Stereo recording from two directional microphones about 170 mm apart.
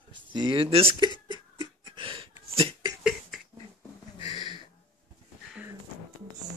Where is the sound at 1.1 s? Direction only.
25° left (ahead or behind).